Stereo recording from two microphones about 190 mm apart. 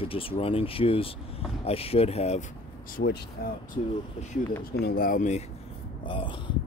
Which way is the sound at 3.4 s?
55° left (ahead or behind).